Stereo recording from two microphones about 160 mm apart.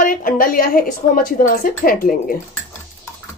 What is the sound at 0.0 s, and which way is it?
A woman's voice, 60° left (ahead or behind).